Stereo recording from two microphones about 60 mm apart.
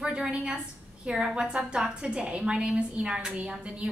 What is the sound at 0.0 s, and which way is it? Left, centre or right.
A woman's voice, centre.